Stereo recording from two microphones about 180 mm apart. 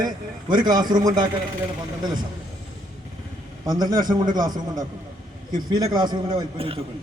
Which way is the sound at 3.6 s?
25° right (ahead or behind).